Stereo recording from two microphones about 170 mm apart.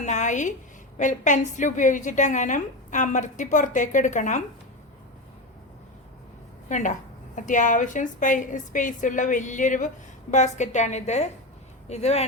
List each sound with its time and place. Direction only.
0.0 s a woman's voice: 45° left (ahead or behind)
6.7 s a woman's voice: 45° left (ahead or behind)